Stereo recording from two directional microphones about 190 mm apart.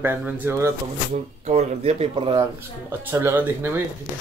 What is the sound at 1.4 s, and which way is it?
Speech, 35° right (ahead or behind).